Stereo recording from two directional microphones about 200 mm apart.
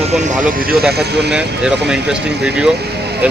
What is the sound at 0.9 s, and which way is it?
Speech, 55° right (ahead or behind).